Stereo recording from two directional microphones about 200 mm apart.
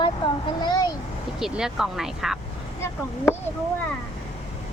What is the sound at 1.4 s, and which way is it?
Speech, centre (ahead or behind).